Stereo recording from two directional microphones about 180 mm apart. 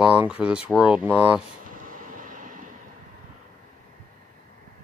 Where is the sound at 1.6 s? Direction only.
50° right (ahead or behind).